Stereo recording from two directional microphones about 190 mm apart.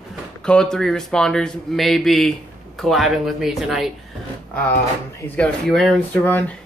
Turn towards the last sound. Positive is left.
turn(degrees=0)  # may be behind; listen again after turning